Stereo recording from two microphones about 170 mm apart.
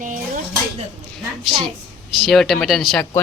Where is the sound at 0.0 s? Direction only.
50° right (ahead or behind).